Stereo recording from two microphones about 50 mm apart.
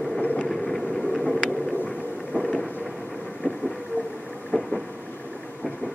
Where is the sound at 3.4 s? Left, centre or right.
Right.